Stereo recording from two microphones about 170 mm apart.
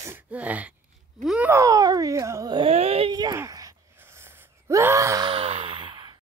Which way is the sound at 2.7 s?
35° right (ahead or behind).